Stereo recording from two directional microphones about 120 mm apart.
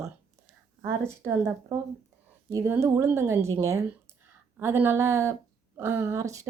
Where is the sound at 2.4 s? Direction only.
20° right (ahead or behind).